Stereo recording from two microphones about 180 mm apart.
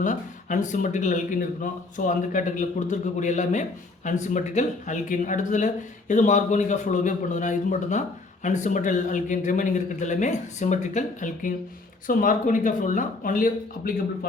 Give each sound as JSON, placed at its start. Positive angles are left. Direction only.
{"t": 0.0, "sound": "speech", "side_deg": 45}